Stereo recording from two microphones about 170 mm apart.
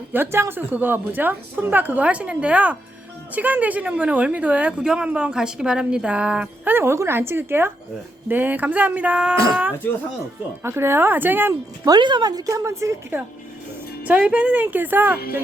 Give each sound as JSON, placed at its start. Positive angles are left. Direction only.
{"t": 0.1, "sound": "speech", "side_deg": -15}
{"t": 9.8, "sound": "speech", "side_deg": 10}
{"t": 10.6, "sound": "speech", "side_deg": -15}
{"t": 11.9, "sound": "speech", "side_deg": -25}